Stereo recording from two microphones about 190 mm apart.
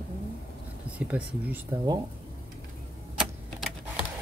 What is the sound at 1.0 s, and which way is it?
Speech, 5° right (ahead or behind).